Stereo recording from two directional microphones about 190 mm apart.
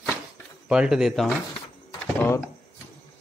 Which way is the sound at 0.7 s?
5° right (ahead or behind).